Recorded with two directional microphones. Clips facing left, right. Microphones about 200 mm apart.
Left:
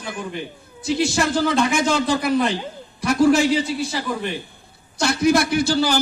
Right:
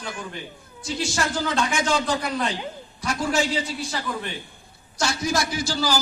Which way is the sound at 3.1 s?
60° left (ahead or behind).